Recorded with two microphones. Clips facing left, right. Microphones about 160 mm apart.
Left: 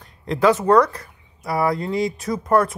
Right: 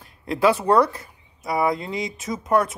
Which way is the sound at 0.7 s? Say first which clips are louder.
Left 2 dB; 30° right (ahead or behind).